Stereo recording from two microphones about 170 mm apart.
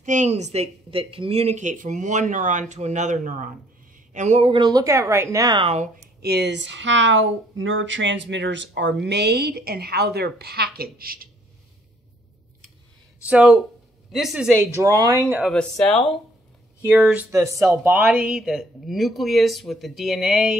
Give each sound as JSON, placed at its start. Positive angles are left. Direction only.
{"t": 0.0, "sound": "a woman's voice", "side_deg": -45}
{"t": 5.7, "sound": "speech", "side_deg": -40}
{"t": 6.2, "sound": "a woman's voice", "side_deg": -75}
{"t": 13.3, "sound": "speech", "side_deg": -5}
{"t": 14.8, "sound": "a woman's voice", "side_deg": -20}
{"t": 15.3, "sound": "speech", "side_deg": 0}
{"t": 17.3, "sound": "a woman's voice", "side_deg": -20}
{"t": 17.6, "sound": "speech", "side_deg": -5}